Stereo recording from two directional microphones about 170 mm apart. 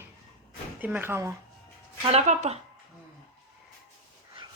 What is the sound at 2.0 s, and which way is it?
Speech, 40° right (ahead or behind).